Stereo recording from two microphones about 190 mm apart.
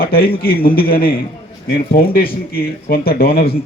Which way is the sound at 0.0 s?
50° left (ahead or behind).